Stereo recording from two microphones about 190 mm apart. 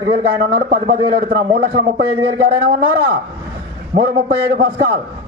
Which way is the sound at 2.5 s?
25° right (ahead or behind).